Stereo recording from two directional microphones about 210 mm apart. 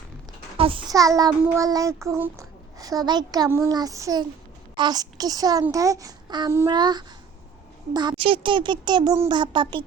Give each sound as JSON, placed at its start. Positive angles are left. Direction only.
{"t": 0.5, "sound": "a child's voice", "side_deg": -25}